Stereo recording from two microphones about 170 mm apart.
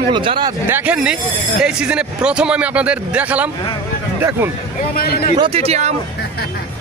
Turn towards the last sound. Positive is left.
turn(degrees=-40)  # may be behind; listen again after turning